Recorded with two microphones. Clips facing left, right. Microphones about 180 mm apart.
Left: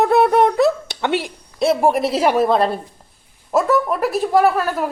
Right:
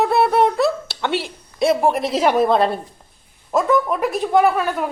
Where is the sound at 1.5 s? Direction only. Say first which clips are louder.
Left 1 dB; centre (ahead or behind).